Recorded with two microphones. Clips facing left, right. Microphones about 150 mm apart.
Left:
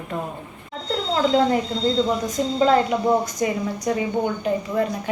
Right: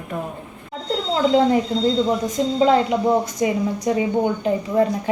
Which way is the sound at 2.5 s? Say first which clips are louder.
Right 1 dB; 20° right (ahead or behind).